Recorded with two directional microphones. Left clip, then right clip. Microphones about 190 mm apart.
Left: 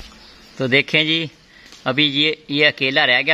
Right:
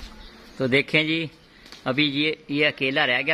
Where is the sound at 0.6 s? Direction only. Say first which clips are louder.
Left 5 dB; 35° left (ahead or behind).